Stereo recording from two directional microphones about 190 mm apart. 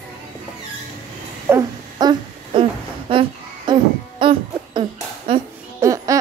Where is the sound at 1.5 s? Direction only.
20° right (ahead or behind).